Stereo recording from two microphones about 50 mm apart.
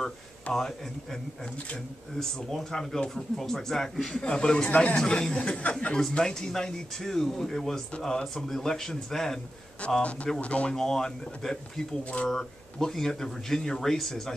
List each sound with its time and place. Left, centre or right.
0.0 s speech: centre
4.2 s speech: centre
4.6 s speech: left
4.9 s speech: centre
5.9 s speech: centre
9.8 s speech: left
10.8 s speech: centre
12.0 s speech: left
12.3 s speech: centre